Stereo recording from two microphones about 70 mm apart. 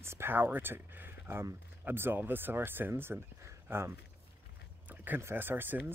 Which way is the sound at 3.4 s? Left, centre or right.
Right.